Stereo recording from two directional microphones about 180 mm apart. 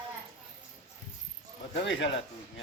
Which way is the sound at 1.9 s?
80° left.